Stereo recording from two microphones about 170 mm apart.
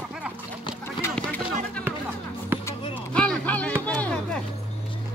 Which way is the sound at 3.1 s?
5° left (ahead or behind).